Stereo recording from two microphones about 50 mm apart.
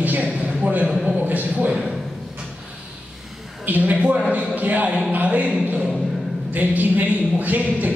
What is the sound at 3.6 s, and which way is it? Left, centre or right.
Speech, right.